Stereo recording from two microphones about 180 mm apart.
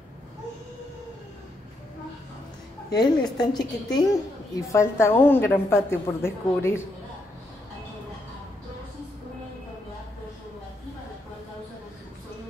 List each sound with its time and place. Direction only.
2.9 s a woman's voice: 25° left (ahead or behind)